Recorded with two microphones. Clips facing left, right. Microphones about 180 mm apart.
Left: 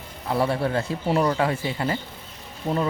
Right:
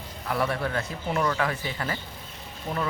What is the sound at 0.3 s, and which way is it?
Speech, 25° left (ahead or behind).